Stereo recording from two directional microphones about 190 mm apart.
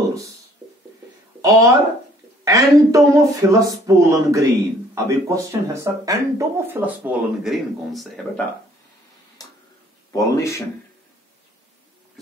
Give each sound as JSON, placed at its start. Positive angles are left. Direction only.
{"t": 1.4, "sound": "speech", "side_deg": -15}
{"t": 10.1, "sound": "speech", "side_deg": 15}